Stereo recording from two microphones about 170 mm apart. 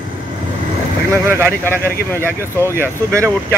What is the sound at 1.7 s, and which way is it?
Speech, 15° left (ahead or behind).